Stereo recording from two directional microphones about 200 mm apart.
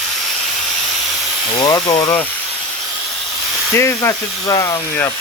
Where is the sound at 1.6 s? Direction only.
20° left (ahead or behind).